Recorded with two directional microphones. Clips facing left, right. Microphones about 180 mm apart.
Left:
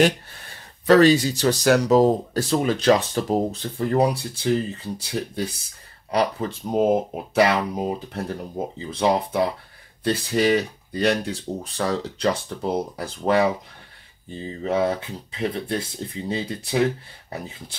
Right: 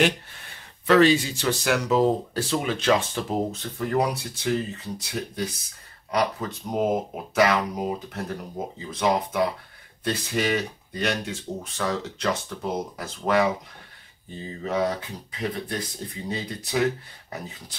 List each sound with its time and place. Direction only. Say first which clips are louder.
0.8 s speech: left 3 dB; 40° left (ahead or behind)
14.6 s speech: left 3 dB; 30° left (ahead or behind)